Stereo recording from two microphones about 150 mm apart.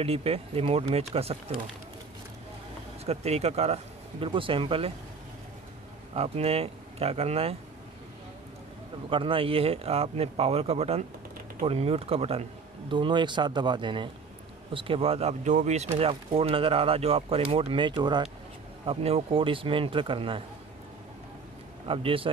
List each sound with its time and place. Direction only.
0.0 s speech: 40° right (ahead or behind)
3.1 s speech: 45° right (ahead or behind)
6.1 s speech: 40° right (ahead or behind)
9.1 s speech: 35° right (ahead or behind)
12.9 s speech: 30° right (ahead or behind); by 15.9 s 50° right (ahead or behind)
16.0 s speech: 40° right (ahead or behind)
18.9 s speech: 40° right (ahead or behind)
21.8 s speech: 35° right (ahead or behind)